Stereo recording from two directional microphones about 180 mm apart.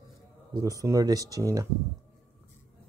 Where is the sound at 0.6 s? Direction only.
20° right (ahead or behind).